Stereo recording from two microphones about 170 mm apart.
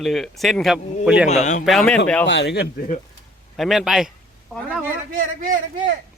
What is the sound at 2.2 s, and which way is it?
Speech, 85° left.